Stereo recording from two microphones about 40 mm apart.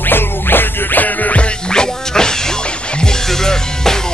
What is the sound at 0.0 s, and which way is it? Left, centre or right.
Music, left.